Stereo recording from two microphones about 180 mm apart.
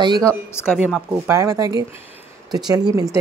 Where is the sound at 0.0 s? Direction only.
20° right (ahead or behind).